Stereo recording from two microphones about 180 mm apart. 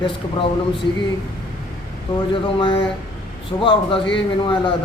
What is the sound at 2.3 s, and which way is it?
A man's voice, 30° left (ahead or behind).